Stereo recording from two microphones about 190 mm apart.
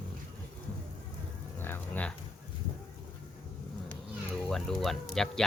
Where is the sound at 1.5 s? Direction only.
10° left (ahead or behind).